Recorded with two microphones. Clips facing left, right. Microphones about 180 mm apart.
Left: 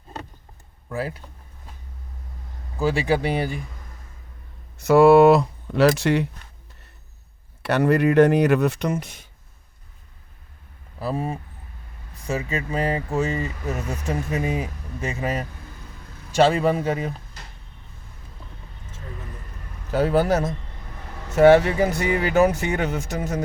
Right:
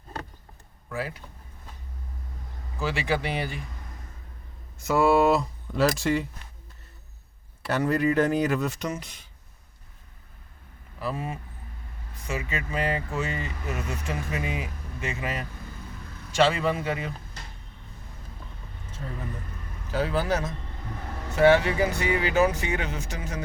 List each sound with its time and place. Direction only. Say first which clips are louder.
0.9 s speech: left 4 dB; 35° left (ahead or behind)
2.8 s speech: left 6 dB; 40° left (ahead or behind)
4.8 s speech: left 8 dB; 65° left (ahead or behind)
7.6 s speech: left 5 dB; 70° left (ahead or behind); by 9.2 s 50° left (ahead or behind)
11.0 s speech: left 5 dB; 35° left (ahead or behind)
19.9 s speech: left 6 dB; 50° left (ahead or behind)